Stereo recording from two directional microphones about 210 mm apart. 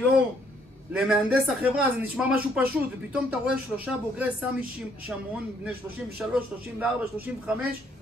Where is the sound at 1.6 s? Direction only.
5° right (ahead or behind).